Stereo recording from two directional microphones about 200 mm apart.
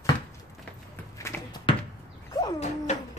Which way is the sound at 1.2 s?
15° left (ahead or behind).